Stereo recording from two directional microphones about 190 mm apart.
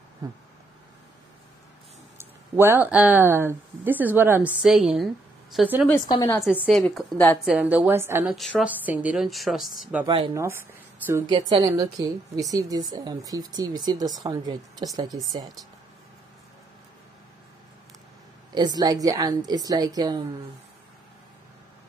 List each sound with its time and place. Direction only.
2.1 s a woman's voice: 10° right (ahead or behind)
5.9 s a woman's voice: 20° left (ahead or behind)
6.4 s a woman's voice: 5° right (ahead or behind)
8.4 s a woman's voice: centre (ahead or behind)
10.0 s a woman's voice: 25° right (ahead or behind)
18.5 s a woman's voice: 20° right (ahead or behind)